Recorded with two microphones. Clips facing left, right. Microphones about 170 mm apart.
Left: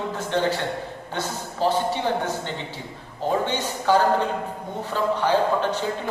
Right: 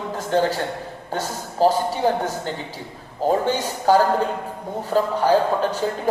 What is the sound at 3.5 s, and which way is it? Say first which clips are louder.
Speech: right 3 dB; 40° right (ahead or behind).